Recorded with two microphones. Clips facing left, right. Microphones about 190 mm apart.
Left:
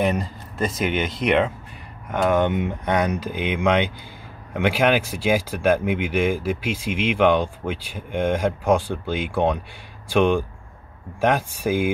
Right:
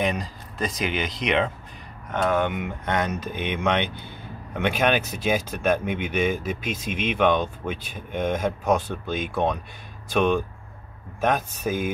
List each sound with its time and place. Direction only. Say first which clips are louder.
0.0 s speech: left 4 dB; 5° left (ahead or behind)